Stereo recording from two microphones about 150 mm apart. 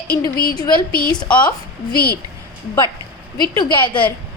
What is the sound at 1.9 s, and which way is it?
Speech, 90° left.